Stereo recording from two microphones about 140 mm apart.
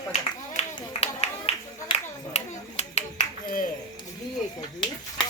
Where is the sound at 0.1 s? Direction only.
50° left (ahead or behind).